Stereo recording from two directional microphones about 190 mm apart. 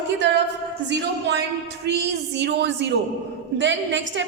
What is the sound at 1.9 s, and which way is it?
Speech, 60° right (ahead or behind).